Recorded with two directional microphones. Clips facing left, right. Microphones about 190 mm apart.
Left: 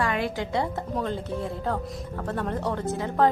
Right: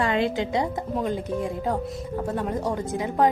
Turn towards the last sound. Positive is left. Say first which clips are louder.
# right 1 dB
turn(degrees=-15)  # may be behind; listen again after turning